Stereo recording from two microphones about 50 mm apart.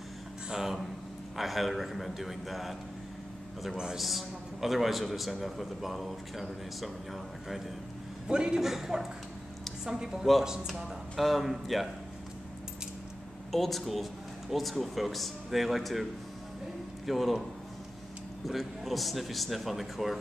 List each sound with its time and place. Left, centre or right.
0.5 s a man's voice: centre
3.9 s a man's voice: centre
8.3 s speech: centre
8.5 s a man's voice: centre
11.1 s a man's voice: centre
13.5 s a man's voice: centre
18.5 s a man's voice: centre